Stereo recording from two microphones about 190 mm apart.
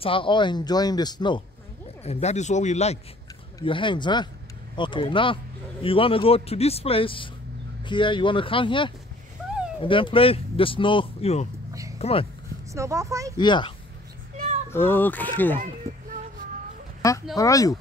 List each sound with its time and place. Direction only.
0.0 s speech: 25° left (ahead or behind)
2.0 s speech: 35° left (ahead or behind)
12.7 s speech: 15° right (ahead or behind)
13.4 s speech: 25° left (ahead or behind)
14.3 s child singing: 40° right (ahead or behind)
14.7 s speech: 10° left (ahead or behind)
15.5 s speech: 45° right (ahead or behind)
17.0 s speech: 15° left (ahead or behind)